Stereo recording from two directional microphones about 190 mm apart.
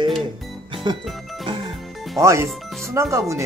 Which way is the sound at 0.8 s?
25° right (ahead or behind).